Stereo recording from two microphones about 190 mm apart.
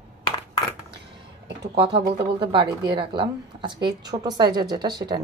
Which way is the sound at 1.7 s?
25° right (ahead or behind).